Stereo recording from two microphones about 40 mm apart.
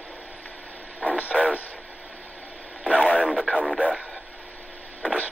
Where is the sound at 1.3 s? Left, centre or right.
Left.